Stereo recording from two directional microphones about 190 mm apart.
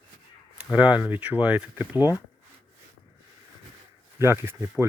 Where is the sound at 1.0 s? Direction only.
5° right (ahead or behind).